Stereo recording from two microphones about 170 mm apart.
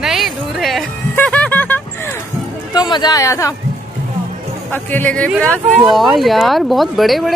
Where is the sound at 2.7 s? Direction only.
25° left (ahead or behind).